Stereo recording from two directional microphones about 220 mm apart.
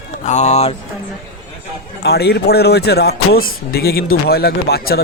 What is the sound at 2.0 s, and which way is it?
Speech, 45° left (ahead or behind).